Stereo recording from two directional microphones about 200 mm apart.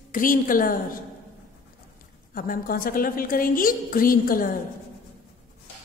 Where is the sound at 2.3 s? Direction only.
45° left (ahead or behind).